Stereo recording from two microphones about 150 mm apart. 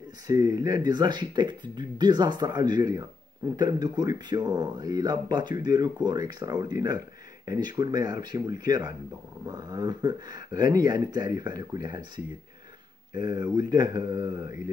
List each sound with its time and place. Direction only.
0.3 s speech: 25° right (ahead or behind)
13.1 s speech: 25° right (ahead or behind)